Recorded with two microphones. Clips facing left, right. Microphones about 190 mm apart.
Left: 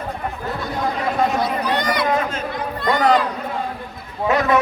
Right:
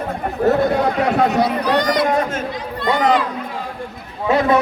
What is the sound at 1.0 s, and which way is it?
Chatter, 70° right (ahead or behind).